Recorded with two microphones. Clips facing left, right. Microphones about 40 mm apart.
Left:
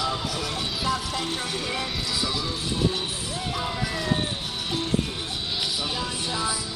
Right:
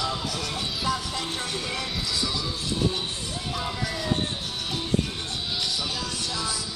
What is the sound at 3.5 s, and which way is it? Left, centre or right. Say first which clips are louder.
Music: left 1 dB; centre.